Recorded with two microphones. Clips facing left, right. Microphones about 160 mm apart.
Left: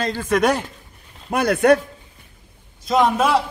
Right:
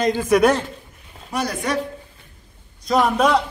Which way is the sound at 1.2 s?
55° left (ahead or behind).